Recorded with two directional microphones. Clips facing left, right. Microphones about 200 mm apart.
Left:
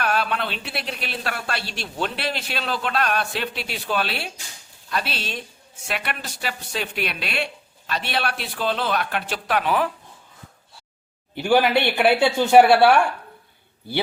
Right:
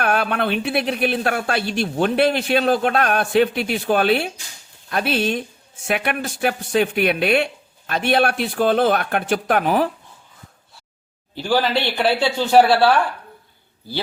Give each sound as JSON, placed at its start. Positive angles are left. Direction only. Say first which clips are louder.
{"t": 0.0, "sound": "speech", "louder": "right 4 dB", "side_deg": -55}
{"t": 11.3, "sound": "a woman's voice", "louder": "left 2 dB", "side_deg": 20}
{"t": 11.9, "sound": "speech", "louder": "left 1 dB", "side_deg": 10}
{"t": 12.6, "sound": "a woman's voice", "louder": "left 1 dB", "side_deg": 25}